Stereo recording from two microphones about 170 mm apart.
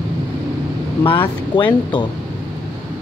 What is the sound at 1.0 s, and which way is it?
Speech, 30° left (ahead or behind).